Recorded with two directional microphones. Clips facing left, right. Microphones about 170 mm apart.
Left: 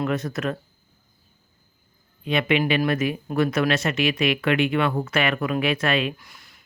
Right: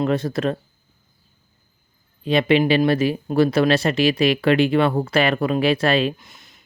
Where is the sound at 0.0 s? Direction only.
30° right (ahead or behind).